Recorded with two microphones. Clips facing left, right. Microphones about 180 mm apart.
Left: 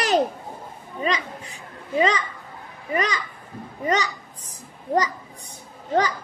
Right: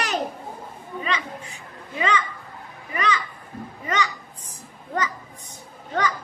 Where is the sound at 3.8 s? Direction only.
35° left (ahead or behind).